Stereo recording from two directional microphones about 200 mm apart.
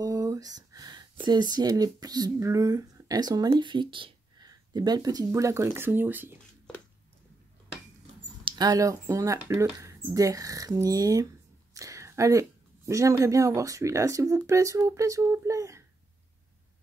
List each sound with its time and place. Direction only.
0.0 s speech: 15° right (ahead or behind)
8.5 s speech: 20° right (ahead or behind)